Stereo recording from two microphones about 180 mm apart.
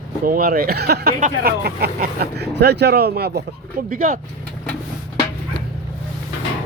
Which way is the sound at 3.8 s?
50° right (ahead or behind).